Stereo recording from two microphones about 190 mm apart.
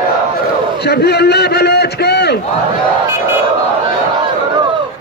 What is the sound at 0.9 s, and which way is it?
A man's voice, 60° left (ahead or behind).